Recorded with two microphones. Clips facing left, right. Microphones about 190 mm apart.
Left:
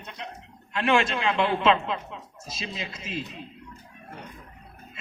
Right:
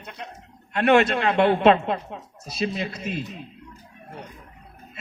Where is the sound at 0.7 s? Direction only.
45° right (ahead or behind).